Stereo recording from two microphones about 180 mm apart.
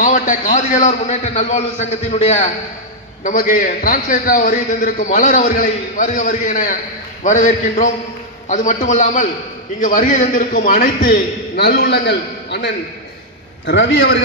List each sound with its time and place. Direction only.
0.0 s a man's voice: 45° left (ahead or behind); by 14.2 s 80° left